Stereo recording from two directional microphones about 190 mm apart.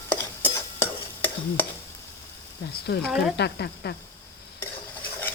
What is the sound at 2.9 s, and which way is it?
Speech, 55° left (ahead or behind).